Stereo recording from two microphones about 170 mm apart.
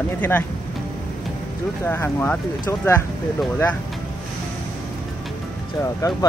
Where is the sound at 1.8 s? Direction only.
15° left (ahead or behind).